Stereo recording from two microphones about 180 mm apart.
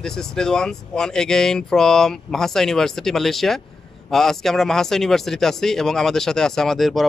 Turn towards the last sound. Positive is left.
turn(degrees=0)  # may be behind; listen again after turning